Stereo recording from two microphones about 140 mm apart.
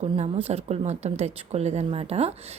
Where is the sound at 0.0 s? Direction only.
50° right (ahead or behind).